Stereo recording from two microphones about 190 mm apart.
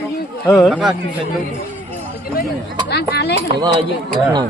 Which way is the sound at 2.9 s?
60° left (ahead or behind).